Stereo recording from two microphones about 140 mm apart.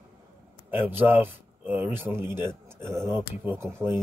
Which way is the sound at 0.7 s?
15° right (ahead or behind).